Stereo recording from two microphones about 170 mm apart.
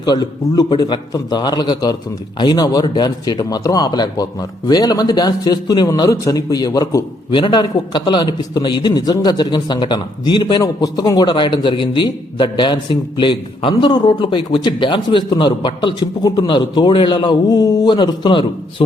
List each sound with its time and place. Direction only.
0.0 s speech: 25° left (ahead or behind)